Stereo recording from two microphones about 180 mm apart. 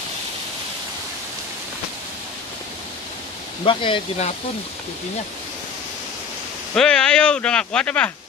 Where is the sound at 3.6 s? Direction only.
30° left (ahead or behind).